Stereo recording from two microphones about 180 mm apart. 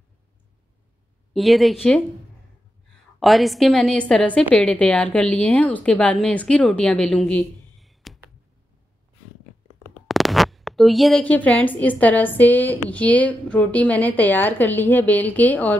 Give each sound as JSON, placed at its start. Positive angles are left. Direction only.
{"t": 1.3, "sound": "a woman's voice", "side_deg": 0}
{"t": 3.2, "sound": "a woman's voice", "side_deg": 0}
{"t": 10.0, "sound": "speech", "side_deg": 0}